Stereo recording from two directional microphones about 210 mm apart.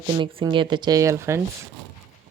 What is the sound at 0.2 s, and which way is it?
Speech, 20° right (ahead or behind).